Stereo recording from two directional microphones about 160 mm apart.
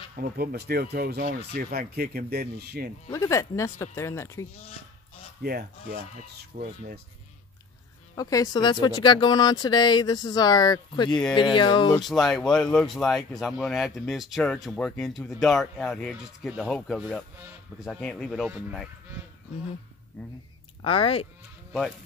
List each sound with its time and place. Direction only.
0.1 s speech: 70° right (ahead or behind)
3.1 s speech: 20° left (ahead or behind)
5.4 s speech: 75° right (ahead or behind)
6.5 s speech: 55° right (ahead or behind)
8.2 s speech: 20° left (ahead or behind)
11.1 s speech: 5° left (ahead or behind)
11.3 s speech: 30° left (ahead or behind)
12.0 s speech: centre (ahead or behind)
20.8 s speech: 35° left (ahead or behind)